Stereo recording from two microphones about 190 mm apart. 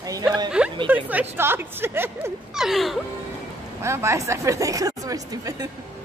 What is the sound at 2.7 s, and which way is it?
Music, centre (ahead or behind).